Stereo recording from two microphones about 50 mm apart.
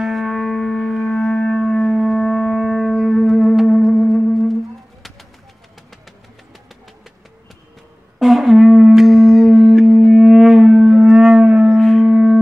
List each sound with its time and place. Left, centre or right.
0.0 s music: centre
8.2 s a sound: centre
10.9 s wind instrument: centre
11.4 s shofar: centre
11.8 s a sound: centre
12.1 s music: centre